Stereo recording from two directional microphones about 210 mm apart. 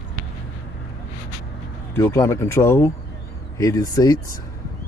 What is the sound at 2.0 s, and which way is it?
Speech, 15° left (ahead or behind).